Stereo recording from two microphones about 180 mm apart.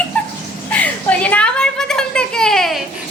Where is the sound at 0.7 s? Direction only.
5° left (ahead or behind).